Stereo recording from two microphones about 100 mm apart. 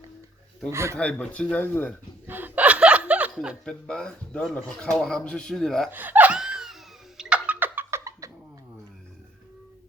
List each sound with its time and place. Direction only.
0.7 s a man's voice: 30° right (ahead or behind)
0.9 s speech: 15° left (ahead or behind)
2.2 s chuckle: 20° right (ahead or behind)
3.6 s speech: 10° left (ahead or behind)
5.9 s laughter: 15° right (ahead or behind)